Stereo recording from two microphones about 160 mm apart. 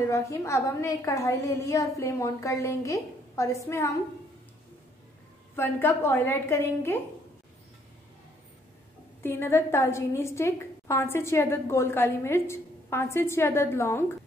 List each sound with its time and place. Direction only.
0.0 s a woman's voice: 20° left (ahead or behind)
5.6 s a woman's voice: 15° left (ahead or behind)
9.2 s a woman's voice: 15° left (ahead or behind)